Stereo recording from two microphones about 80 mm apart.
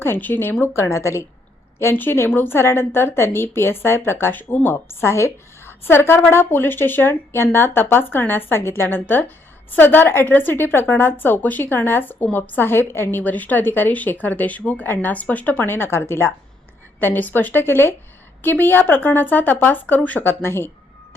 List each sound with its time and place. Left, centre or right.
0.0 s a woman's voice: left
0.6 s a woman's voice: left